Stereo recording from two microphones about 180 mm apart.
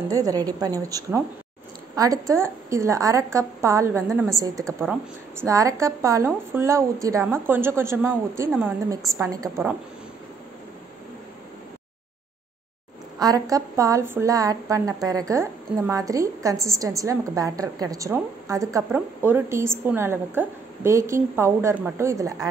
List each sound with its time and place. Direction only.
0.1 s a woman's voice: 20° right (ahead or behind)
13.2 s a woman's voice: 20° right (ahead or behind)